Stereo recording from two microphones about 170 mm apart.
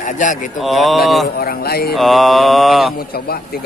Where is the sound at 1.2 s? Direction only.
65° left (ahead or behind).